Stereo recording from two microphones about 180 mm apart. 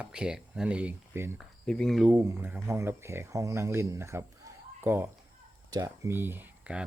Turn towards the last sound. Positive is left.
turn(degrees=-5)  # may be behind; listen again after turning